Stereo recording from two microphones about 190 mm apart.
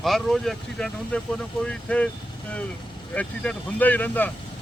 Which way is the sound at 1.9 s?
5° left (ahead or behind).